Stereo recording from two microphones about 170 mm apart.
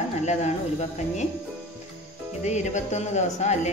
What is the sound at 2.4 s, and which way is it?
A man's voice, 45° left (ahead or behind).